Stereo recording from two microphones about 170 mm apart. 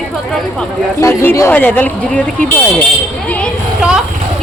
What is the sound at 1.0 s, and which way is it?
Speech, 15° left (ahead or behind).